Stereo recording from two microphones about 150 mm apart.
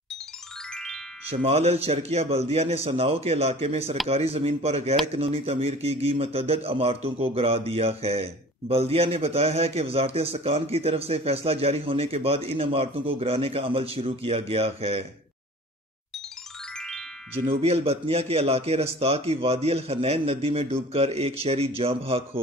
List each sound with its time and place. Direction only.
1.3 s a man's voice: 45° right (ahead or behind)
16.7 s music: 5° left (ahead or behind)
17.5 s a man's voice: 40° right (ahead or behind)